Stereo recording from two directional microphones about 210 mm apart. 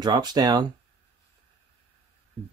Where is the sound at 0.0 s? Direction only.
20° right (ahead or behind).